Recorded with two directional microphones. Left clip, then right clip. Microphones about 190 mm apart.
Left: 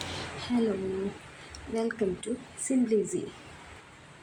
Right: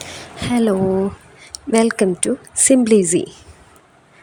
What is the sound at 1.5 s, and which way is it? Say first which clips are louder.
Speech: right 15 dB; 50° right (ahead or behind).